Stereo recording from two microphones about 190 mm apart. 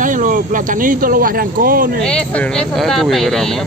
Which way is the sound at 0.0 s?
45° right (ahead or behind).